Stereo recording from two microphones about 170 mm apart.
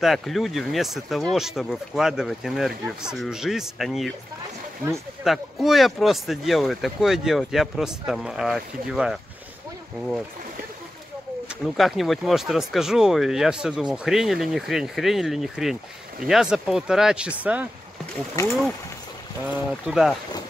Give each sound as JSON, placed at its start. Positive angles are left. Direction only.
{"t": 0.0, "sound": "speech", "side_deg": 0}
{"t": 5.2, "sound": "speech", "side_deg": 0}
{"t": 11.6, "sound": "speech", "side_deg": 0}
{"t": 18.3, "sound": "speech", "side_deg": 15}
{"t": 19.4, "sound": "speech", "side_deg": -5}